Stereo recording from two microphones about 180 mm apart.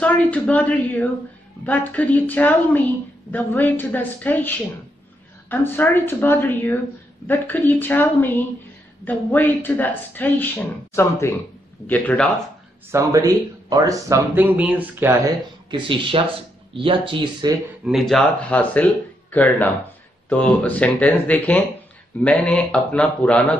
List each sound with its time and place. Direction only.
0.0 s speech: 10° left (ahead or behind)
12.9 s speech: 20° right (ahead or behind)
15.7 s speech: 30° right (ahead or behind)
17.8 s speech: centre (ahead or behind)